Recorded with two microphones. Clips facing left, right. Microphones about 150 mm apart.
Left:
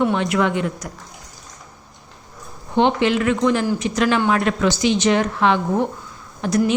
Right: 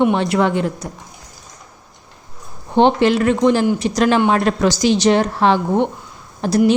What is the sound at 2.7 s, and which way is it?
A woman's voice, 35° right (ahead or behind).